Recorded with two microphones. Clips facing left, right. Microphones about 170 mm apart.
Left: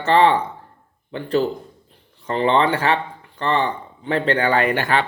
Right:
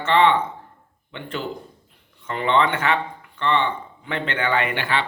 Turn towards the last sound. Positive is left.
turn(degrees=45)  # may be behind; listen again after turning